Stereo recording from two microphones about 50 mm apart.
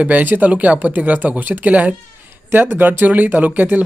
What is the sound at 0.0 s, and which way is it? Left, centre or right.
Speech, right.